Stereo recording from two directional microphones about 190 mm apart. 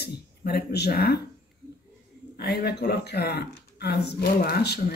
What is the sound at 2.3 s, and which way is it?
Speech, 55° left (ahead or behind).